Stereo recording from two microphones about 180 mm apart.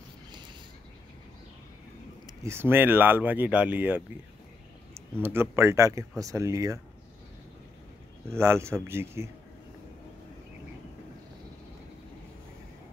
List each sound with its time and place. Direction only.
2.2 s speech: 15° right (ahead or behind)
8.3 s speech: 15° right (ahead or behind)